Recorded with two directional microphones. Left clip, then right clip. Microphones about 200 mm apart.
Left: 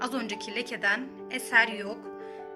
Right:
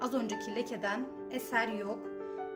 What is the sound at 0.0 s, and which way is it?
A woman's voice, 20° right (ahead or behind).